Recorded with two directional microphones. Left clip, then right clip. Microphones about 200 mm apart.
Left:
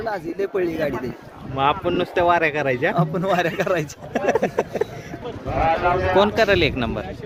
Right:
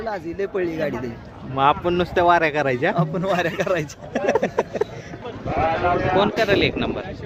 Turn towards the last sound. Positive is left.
turn(degrees=10)  # may be behind; listen again after turning